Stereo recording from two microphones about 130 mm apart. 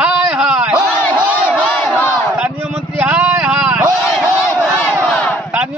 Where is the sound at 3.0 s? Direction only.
20° right (ahead or behind).